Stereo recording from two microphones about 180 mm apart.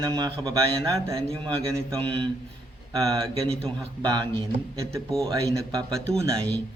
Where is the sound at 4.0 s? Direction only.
20° right (ahead or behind).